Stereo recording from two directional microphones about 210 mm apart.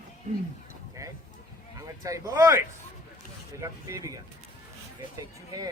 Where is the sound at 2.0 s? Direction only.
15° right (ahead or behind).